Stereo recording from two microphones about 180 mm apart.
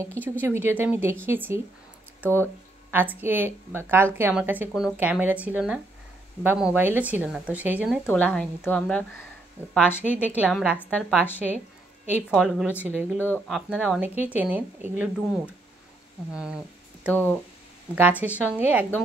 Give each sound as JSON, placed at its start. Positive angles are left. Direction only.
{"t": 0.0, "sound": "a woman's voice", "side_deg": -10}
{"t": 2.9, "sound": "a woman's voice", "side_deg": -10}
{"t": 8.6, "sound": "speech", "side_deg": 5}
{"t": 9.8, "sound": "a woman's voice", "side_deg": -5}
{"t": 16.3, "sound": "a sound", "side_deg": -5}
{"t": 17.1, "sound": "speech", "side_deg": 10}
{"t": 17.9, "sound": "a woman's voice", "side_deg": -10}